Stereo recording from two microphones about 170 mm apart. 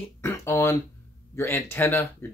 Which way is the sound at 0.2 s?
15° left (ahead or behind).